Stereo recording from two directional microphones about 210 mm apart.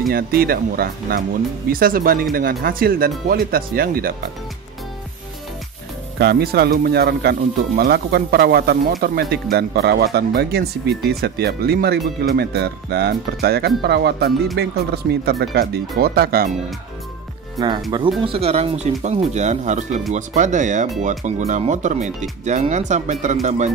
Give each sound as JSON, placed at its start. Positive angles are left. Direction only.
{"t": 0.1, "sound": "speech", "side_deg": -45}
{"t": 6.1, "sound": "speech", "side_deg": -50}
{"t": 17.6, "sound": "speech", "side_deg": -20}